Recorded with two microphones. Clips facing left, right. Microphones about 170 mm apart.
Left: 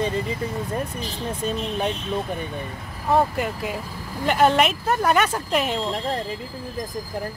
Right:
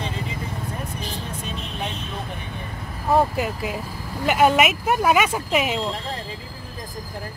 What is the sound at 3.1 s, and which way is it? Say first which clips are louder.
Speech: right 1 dB; centre (ahead or behind).